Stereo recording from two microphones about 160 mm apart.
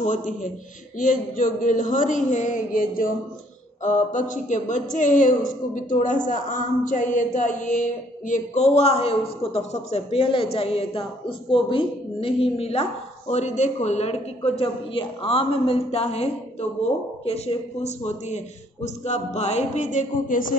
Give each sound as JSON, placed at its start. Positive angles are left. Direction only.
{"t": 0.0, "sound": "a man's voice", "side_deg": 50}